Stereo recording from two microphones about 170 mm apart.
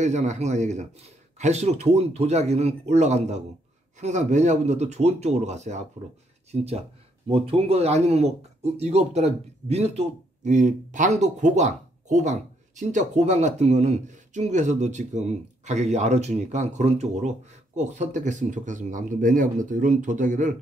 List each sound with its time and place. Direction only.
0.0 s a man's voice: 45° right (ahead or behind)